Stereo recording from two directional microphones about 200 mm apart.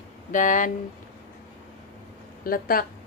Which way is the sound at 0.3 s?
40° left (ahead or behind).